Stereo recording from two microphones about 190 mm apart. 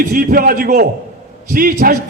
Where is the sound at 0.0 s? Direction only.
50° right (ahead or behind).